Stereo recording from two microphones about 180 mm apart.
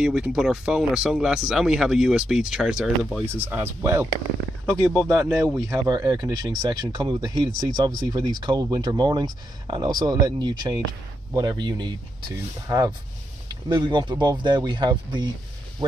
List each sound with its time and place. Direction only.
0.0 s speech: 5° right (ahead or behind)
4.6 s speech: 5° left (ahead or behind)
5.3 s speech: 15° right (ahead or behind)